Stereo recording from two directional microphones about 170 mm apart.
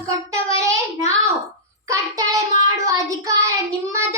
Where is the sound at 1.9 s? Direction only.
20° right (ahead or behind).